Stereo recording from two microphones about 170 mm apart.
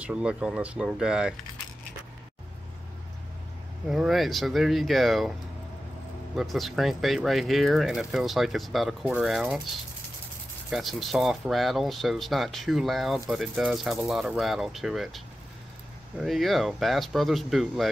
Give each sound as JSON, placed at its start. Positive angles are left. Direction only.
{"t": 0.0, "sound": "speech", "side_deg": -5}
{"t": 3.9, "sound": "speech", "side_deg": 0}
{"t": 6.3, "sound": "speech", "side_deg": 0}
{"t": 10.7, "sound": "speech", "side_deg": 0}